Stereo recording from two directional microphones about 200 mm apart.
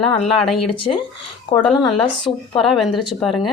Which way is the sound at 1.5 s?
20° left (ahead or behind).